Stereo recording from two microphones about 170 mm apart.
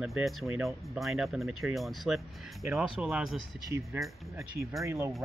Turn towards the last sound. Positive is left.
turn(degrees=-15)  # may be behind; listen again after turning